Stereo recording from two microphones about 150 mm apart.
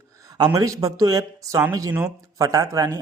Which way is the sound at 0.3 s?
25° right (ahead or behind).